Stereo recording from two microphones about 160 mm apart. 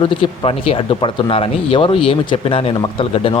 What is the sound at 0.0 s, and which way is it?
Speech, 35° left (ahead or behind).